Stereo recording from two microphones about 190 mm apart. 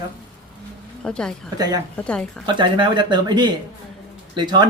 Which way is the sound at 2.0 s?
5° left (ahead or behind).